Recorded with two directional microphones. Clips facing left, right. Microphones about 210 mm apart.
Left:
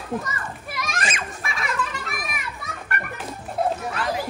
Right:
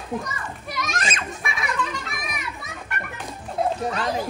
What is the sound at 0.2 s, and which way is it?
Children playing, centre (ahead or behind).